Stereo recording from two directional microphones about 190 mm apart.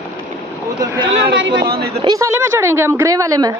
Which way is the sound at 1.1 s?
75° right (ahead or behind).